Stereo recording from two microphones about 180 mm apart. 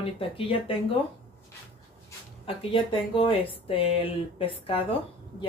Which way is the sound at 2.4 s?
30° left (ahead or behind).